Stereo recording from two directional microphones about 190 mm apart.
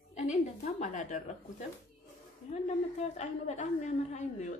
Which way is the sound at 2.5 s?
35° left (ahead or behind).